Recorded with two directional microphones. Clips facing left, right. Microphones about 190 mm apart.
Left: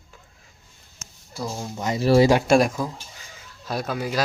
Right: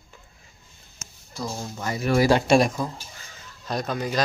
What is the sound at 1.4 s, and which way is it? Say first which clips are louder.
Speech: left 1 dB; 10° left (ahead or behind).